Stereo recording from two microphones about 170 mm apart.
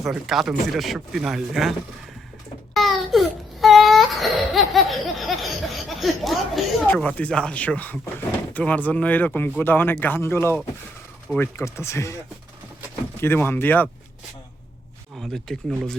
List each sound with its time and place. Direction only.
0.0 s speech: centre (ahead or behind)
2.7 s baby cry: centre (ahead or behind)
8.5 s speech: 10° left (ahead or behind)
13.2 s speech: 10° left (ahead or behind)
15.2 s speech: centre (ahead or behind)